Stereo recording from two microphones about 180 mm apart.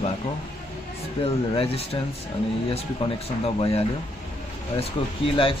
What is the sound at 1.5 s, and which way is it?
Speech, 30° left (ahead or behind).